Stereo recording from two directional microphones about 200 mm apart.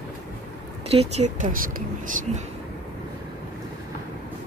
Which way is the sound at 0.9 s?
30° right (ahead or behind).